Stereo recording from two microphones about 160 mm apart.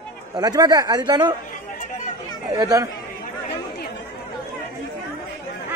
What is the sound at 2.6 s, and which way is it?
Speech, 25° right (ahead or behind).